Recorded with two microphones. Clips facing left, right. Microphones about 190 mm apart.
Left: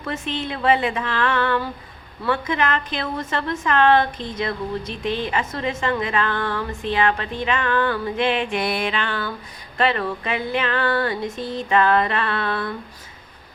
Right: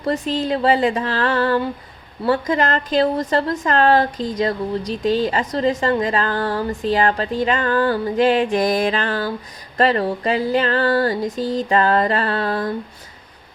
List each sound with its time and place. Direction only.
0.0 s speech: 35° right (ahead or behind)